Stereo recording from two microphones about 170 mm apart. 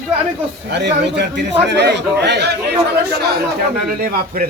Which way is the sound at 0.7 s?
85° right.